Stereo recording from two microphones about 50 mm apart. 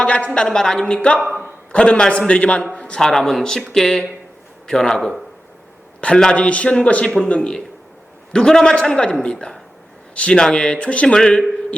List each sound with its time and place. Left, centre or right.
0.0 s a sound: left
0.4 s a man's voice: centre
6.0 s a man's voice: centre
8.3 s speech: centre